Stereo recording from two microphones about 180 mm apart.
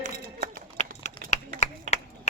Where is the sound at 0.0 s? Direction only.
45° right (ahead or behind).